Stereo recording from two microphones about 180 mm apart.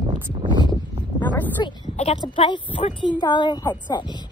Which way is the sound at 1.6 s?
25° left (ahead or behind).